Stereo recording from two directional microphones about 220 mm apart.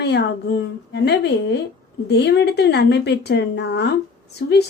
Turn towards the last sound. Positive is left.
turn(degrees=50)  # may be behind; listen again after turning